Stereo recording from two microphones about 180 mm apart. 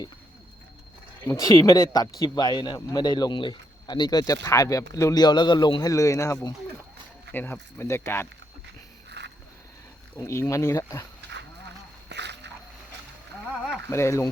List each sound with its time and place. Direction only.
1.3 s speech: 20° left (ahead or behind)
9.0 s walk: 75° right (ahead or behind)
10.2 s speech: 15° left (ahead or behind)
11.3 s cattle: 75° right (ahead or behind)
13.9 s speech: 15° left (ahead or behind)